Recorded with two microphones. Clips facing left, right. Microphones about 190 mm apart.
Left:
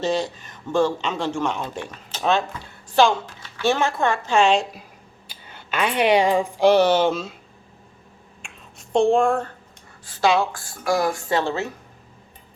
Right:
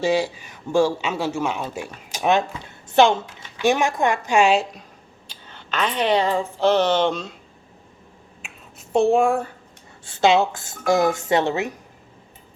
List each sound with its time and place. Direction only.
0.0 s speech: 10° right (ahead or behind)
5.3 s speech: 10° left (ahead or behind)
8.4 s finger snapping: 5° right (ahead or behind)
10.0 s a woman's voice: 25° right (ahead or behind)